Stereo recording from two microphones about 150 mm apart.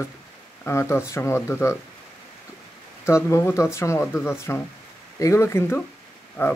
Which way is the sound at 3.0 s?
20° left (ahead or behind).